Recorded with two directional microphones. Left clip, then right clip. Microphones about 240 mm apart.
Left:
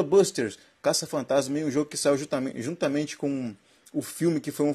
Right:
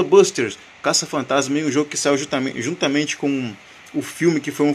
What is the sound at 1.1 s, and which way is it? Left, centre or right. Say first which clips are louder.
A man's voice: right 6 dB; centre.